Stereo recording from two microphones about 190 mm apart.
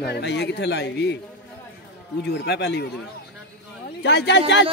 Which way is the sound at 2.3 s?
60° left (ahead or behind).